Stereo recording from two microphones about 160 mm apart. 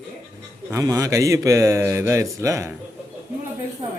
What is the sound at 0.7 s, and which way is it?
Speech, 20° right (ahead or behind).